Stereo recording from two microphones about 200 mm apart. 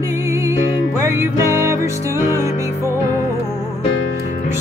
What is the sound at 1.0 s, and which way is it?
Music, 15° right (ahead or behind).